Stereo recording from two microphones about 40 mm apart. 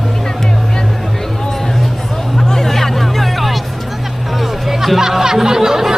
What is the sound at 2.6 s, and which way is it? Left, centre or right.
Music, centre.